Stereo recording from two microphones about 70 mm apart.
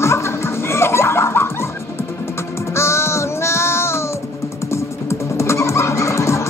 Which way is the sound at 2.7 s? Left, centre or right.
Left.